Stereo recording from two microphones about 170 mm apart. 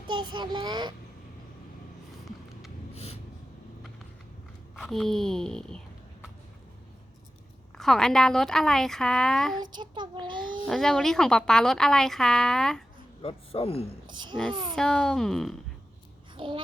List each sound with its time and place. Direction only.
0.1 s a child's voice: 25° right (ahead or behind)
2.9 s a sound: 35° left (ahead or behind)
4.8 s speech: centre (ahead or behind)
7.8 s speech: centre (ahead or behind)
9.6 s a child's voice: 25° right (ahead or behind)
10.7 s speech: 5° left (ahead or behind)
13.2 s speech: 35° left (ahead or behind)
14.1 s a child's voice: 25° right (ahead or behind)
14.8 s speech: 5° left (ahead or behind)
16.4 s a child's voice: 30° right (ahead or behind)